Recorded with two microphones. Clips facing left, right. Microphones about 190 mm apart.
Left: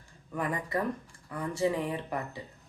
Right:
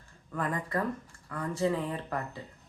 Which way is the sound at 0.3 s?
10° left (ahead or behind).